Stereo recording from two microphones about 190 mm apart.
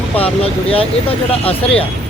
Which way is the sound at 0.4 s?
30° left (ahead or behind).